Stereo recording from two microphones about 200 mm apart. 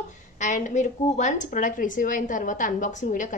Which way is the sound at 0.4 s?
35° left (ahead or behind).